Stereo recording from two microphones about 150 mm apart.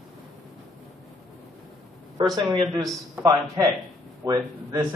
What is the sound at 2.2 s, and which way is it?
A man's voice, 30° right (ahead or behind).